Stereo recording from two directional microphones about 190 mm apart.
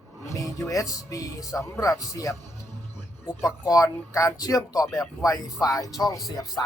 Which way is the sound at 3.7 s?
15° left (ahead or behind).